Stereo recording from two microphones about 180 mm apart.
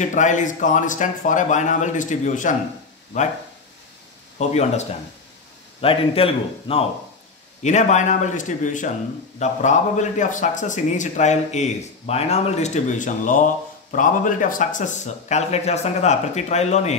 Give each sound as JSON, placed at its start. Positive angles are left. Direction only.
{"t": 0.0, "sound": "a man's voice", "side_deg": 45}
{"t": 4.4, "sound": "a man's voice", "side_deg": 35}